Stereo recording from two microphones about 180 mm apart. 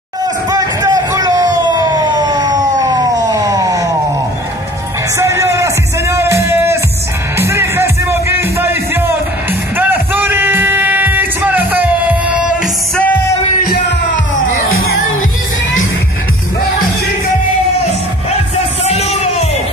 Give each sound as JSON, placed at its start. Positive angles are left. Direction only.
{"t": 0.5, "sound": "a sound", "side_deg": -20}
{"t": 5.1, "sound": "music", "side_deg": -15}
{"t": 12.9, "sound": "music", "side_deg": 10}
{"t": 13.7, "sound": "music", "side_deg": 75}
{"t": 18.9, "sound": "music", "side_deg": 35}